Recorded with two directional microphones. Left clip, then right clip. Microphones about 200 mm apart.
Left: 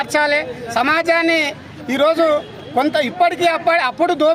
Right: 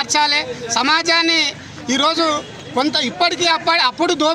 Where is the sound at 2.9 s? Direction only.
30° left (ahead or behind).